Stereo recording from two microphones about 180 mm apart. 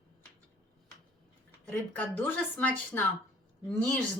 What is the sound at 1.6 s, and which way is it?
Speech, 10° left (ahead or behind).